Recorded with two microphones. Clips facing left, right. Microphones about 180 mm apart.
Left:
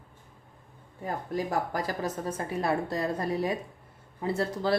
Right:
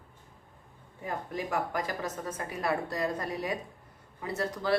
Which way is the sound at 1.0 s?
35° left (ahead or behind).